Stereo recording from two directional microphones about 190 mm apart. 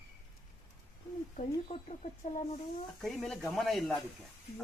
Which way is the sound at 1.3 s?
40° left (ahead or behind).